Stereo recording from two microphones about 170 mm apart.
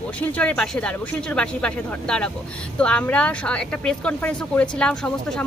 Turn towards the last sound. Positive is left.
turn(degrees=5)  # may be behind; listen again after turning